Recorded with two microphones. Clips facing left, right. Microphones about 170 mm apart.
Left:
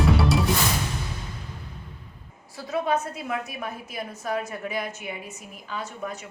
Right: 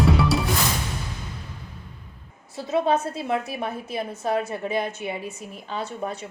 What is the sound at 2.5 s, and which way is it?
A woman's voice, 25° right (ahead or behind).